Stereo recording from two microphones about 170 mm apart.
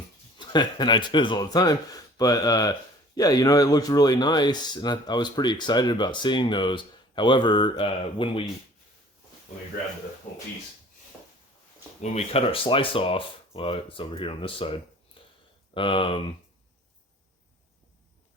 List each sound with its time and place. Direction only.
0.3 s speech: 25° left (ahead or behind)
12.0 s speech: 40° left (ahead or behind)